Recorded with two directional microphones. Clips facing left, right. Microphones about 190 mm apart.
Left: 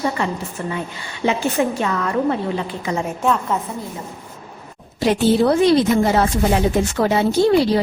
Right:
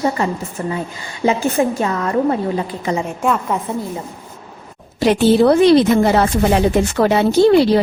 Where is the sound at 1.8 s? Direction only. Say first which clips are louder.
Right 3 dB; 35° right (ahead or behind).